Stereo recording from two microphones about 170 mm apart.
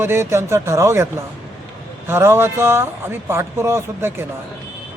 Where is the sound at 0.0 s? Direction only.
15° right (ahead or behind).